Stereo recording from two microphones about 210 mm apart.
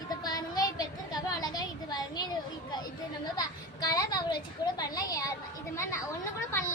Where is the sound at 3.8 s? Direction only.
20° left (ahead or behind).